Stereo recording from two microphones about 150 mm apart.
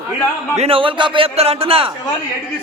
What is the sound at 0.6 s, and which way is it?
A man's voice, 40° right (ahead or behind).